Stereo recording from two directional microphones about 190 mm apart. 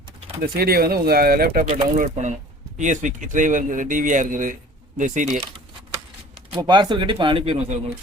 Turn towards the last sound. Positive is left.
turn(degrees=-30)  # may be behind; listen again after turning